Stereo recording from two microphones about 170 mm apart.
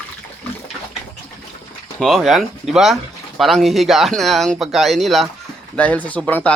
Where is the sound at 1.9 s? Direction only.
Centre (ahead or behind).